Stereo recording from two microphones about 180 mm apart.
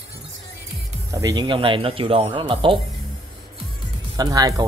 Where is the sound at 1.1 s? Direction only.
20° right (ahead or behind).